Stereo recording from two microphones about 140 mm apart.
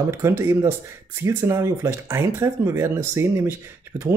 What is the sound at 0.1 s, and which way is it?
Speech, 20° right (ahead or behind).